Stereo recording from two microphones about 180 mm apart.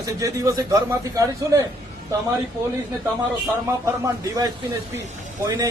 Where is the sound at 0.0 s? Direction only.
20° right (ahead or behind).